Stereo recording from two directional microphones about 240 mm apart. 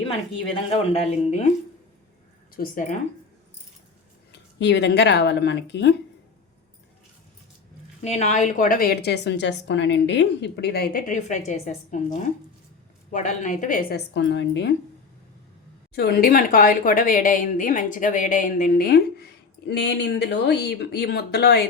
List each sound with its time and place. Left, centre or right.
0.5 s speech: left
2.6 s a woman's voice: left
4.3 s speech: left
8.0 s a woman's voice: left
14.1 s a woman's voice: left
16.0 s a woman's voice: left